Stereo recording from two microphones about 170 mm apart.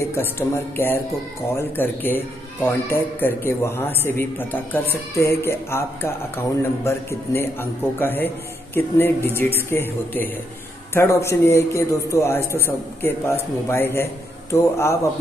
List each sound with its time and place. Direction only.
0.0 s a man's voice: 15° left (ahead or behind)